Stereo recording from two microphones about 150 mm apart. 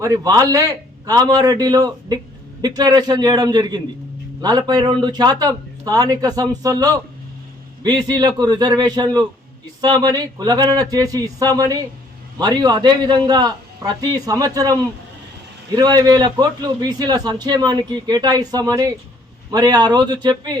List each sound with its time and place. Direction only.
0.0 s a man's voice: 25° right (ahead or behind)